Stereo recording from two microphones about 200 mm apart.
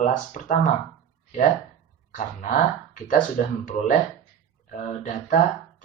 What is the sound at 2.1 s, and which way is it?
Speech, 40° left (ahead or behind).